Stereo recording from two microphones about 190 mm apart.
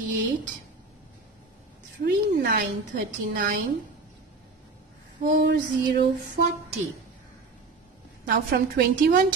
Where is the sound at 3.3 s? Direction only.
45° right (ahead or behind).